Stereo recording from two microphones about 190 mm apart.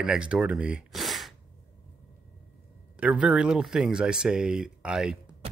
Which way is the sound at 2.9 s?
5° right (ahead or behind).